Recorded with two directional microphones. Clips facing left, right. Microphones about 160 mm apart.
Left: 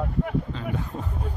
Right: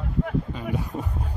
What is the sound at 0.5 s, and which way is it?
Speech, 10° right (ahead or behind).